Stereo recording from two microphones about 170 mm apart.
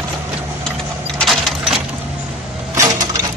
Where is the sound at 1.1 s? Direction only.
Centre (ahead or behind).